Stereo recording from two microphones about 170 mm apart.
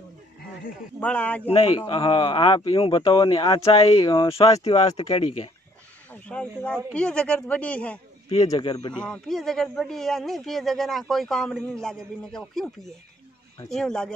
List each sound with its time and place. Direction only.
0.9 s speech: 10° left (ahead or behind)
1.5 s speech: 35° left (ahead or behind)
5.0 s speech: 35° left (ahead or behind)
6.0 s speech: 10° left (ahead or behind)
8.5 s speech: 25° left (ahead or behind)
8.9 s speech: 5° left (ahead or behind)